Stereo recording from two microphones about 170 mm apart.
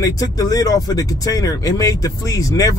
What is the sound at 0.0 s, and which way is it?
Speech, 20° left (ahead or behind).